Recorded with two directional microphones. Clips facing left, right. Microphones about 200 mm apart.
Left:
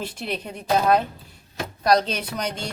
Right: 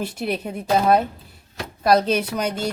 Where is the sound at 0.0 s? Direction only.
10° right (ahead or behind).